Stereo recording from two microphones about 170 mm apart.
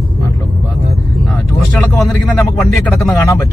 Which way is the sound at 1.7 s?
Centre (ahead or behind).